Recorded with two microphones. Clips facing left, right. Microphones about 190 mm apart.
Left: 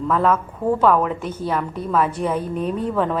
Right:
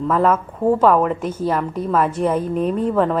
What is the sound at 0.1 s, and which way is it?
A woman's voice, centre (ahead or behind).